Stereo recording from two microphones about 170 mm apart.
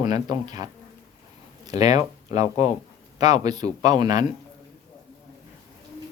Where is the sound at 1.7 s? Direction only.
20° right (ahead or behind).